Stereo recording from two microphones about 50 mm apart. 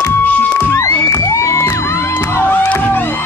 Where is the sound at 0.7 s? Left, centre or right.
Left.